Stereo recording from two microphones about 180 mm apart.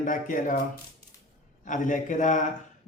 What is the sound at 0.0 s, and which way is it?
Speech, 45° left (ahead or behind).